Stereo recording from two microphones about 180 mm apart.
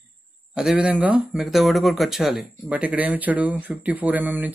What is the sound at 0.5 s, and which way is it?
Speech, 5° right (ahead or behind).